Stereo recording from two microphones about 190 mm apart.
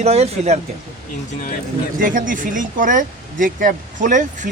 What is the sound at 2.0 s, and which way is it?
Speech, 45° right (ahead or behind).